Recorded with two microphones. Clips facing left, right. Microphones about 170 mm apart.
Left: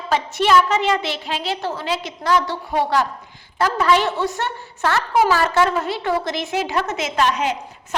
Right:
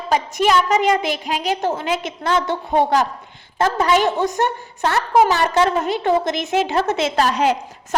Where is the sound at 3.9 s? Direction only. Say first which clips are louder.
Right 1 dB; 15° right (ahead or behind).